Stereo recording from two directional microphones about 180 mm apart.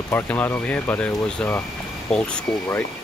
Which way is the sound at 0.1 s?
10° left (ahead or behind).